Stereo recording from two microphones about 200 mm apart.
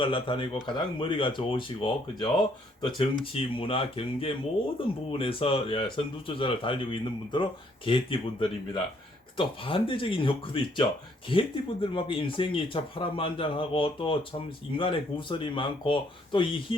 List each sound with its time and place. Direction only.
0.0 s speech: 25° left (ahead or behind)